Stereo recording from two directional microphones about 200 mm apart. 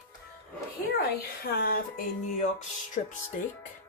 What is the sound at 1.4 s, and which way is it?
A woman's voice, 50° left (ahead or behind).